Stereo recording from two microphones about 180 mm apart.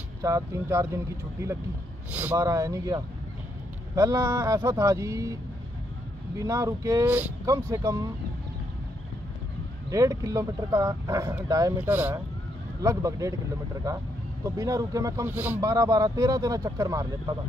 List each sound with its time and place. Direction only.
0.2 s speech: 15° right (ahead or behind)
9.8 s speech: 20° right (ahead or behind)
14.4 s speech: 20° right (ahead or behind)